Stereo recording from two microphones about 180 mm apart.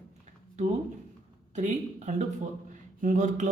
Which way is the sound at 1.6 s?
45° right (ahead or behind).